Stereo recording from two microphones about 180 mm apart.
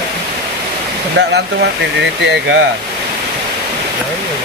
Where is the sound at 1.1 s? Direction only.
70° right (ahead or behind).